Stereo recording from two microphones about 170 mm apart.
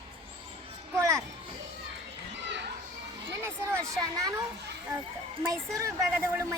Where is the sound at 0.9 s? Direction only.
20° right (ahead or behind).